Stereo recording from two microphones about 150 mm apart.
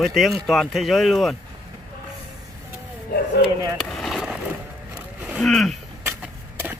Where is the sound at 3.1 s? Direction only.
90° left.